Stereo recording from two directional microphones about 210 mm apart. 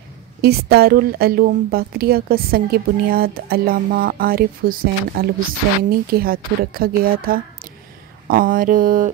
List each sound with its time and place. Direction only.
0.4 s a woman's voice: 50° right (ahead or behind)